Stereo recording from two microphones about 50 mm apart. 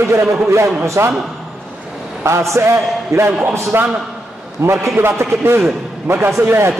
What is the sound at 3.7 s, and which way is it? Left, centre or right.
Speech, right.